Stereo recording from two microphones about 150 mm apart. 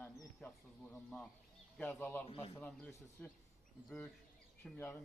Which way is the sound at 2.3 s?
40° left (ahead or behind).